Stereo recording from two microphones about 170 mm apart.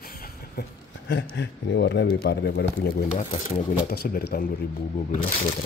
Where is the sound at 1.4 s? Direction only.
90° left.